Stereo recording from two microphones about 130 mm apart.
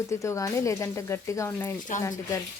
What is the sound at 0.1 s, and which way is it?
A woman's voice, 25° left (ahead or behind).